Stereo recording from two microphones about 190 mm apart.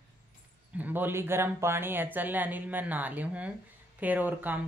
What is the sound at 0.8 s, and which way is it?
Speech, 10° right (ahead or behind).